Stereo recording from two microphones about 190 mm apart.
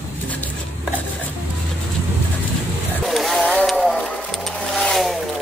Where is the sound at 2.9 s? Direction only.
Centre (ahead or behind).